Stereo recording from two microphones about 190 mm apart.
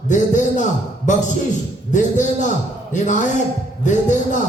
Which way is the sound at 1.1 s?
40° left (ahead or behind).